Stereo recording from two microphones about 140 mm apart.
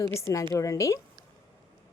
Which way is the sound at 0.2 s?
20° left (ahead or behind).